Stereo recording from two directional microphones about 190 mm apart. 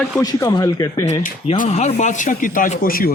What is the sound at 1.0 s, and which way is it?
Speech, 35° left (ahead or behind).